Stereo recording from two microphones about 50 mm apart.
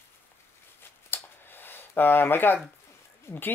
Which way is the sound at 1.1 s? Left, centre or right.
Left.